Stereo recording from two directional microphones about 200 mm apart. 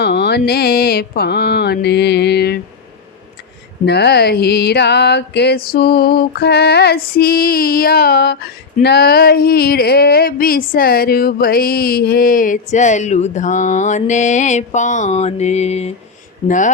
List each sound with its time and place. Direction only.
0.0 s mantra: 55° left (ahead or behind)
3.8 s a sound: 55° left (ahead or behind); by 15.9 s 35° left (ahead or behind)
16.5 s speech: 40° left (ahead or behind)